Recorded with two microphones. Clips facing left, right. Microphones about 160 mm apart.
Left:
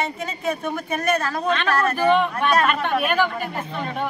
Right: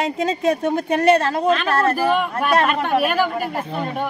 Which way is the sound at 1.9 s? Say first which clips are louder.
Left 1 dB; 5° right (ahead or behind).